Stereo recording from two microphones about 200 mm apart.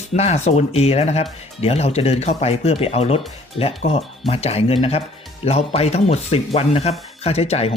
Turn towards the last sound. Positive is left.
turn(degrees=30)  # may be behind; listen again after turning